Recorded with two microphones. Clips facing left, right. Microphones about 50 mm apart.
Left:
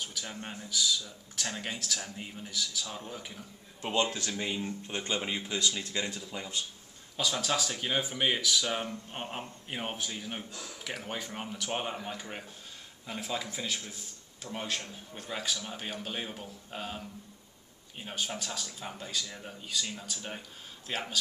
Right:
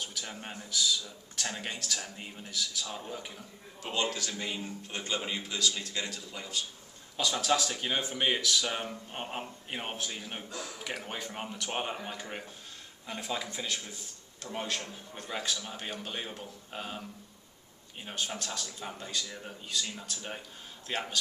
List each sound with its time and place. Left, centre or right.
0.0 s a man's voice: centre
3.8 s a man's voice: left
7.2 s a man's voice: centre